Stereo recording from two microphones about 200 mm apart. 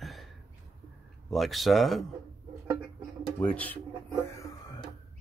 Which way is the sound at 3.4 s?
10° left (ahead or behind).